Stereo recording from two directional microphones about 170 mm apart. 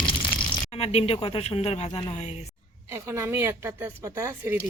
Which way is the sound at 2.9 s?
15° right (ahead or behind).